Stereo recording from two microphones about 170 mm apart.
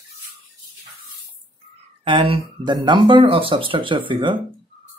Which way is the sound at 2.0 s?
30° right (ahead or behind).